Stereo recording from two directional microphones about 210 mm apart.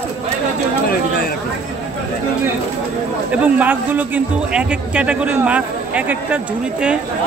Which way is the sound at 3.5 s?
10° right (ahead or behind).